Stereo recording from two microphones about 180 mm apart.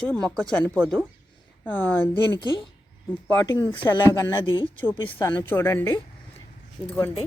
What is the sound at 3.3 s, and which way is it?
Speech, 15° left (ahead or behind).